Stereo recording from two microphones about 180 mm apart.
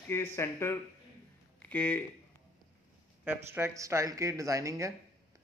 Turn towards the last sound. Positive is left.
turn(degrees=-20)  # may be behind; listen again after turning